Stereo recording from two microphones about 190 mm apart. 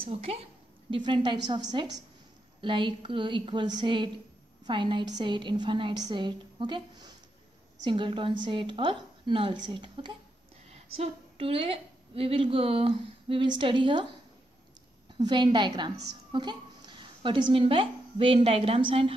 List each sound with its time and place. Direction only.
0.0 s a woman's voice: 30° right (ahead or behind)
15.1 s a woman's voice: 25° right (ahead or behind)